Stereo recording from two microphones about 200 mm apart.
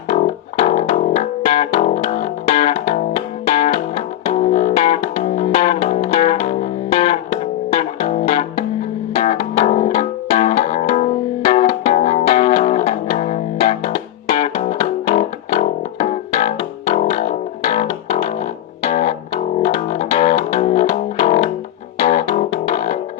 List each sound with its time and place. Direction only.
0.1 s music: 35° left (ahead or behind)